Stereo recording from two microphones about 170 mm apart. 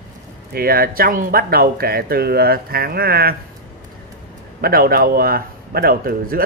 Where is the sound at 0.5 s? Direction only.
60° right (ahead or behind).